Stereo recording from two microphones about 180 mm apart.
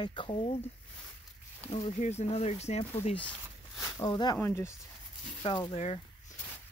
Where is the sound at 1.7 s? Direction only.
35° left (ahead or behind).